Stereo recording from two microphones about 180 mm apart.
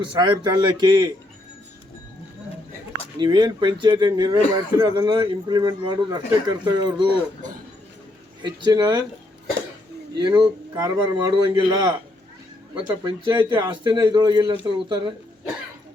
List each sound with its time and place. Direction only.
0.0 s a man's voice: 25° right (ahead or behind)
3.2 s a man's voice: 25° right (ahead or behind)
8.4 s a man's voice: 25° right (ahead or behind)
10.2 s a man's voice: 25° right (ahead or behind)